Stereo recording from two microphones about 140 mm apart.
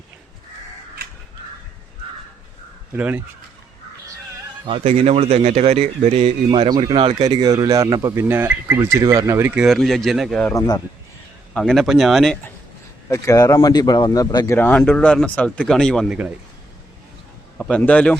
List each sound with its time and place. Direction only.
2.9 s speech: 15° right (ahead or behind)
4.6 s a man's voice: 45° right (ahead or behind)
6.5 s speech: 35° right (ahead or behind); by 9.6 s 20° right (ahead or behind)
9.6 s speech: centre (ahead or behind)
10.4 s speech: 20° left (ahead or behind)
11.5 s speech: 5° left (ahead or behind)
13.1 s speech: 20° left (ahead or behind); by 16.0 s 5° left (ahead or behind)
16.0 s speech: 10° right (ahead or behind)
17.6 s speech: 5° left (ahead or behind)